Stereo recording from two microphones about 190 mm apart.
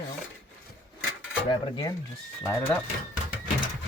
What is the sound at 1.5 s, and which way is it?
Cutlery, 25° left (ahead or behind).